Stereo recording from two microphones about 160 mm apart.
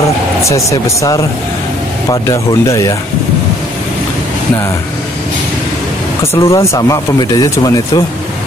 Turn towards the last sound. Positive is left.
turn(degrees=25)  # may be behind; listen again after turning